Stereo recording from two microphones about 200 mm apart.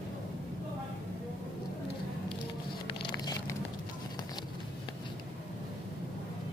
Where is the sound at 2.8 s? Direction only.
20° left (ahead or behind).